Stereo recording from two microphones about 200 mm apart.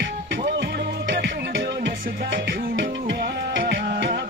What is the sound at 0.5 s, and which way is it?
Music, 55° right (ahead or behind).